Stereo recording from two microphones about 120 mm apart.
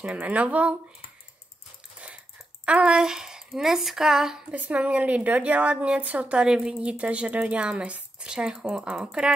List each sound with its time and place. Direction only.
0.0 s a woman's voice: 10° right (ahead or behind)
2.6 s a woman's voice: 10° right (ahead or behind)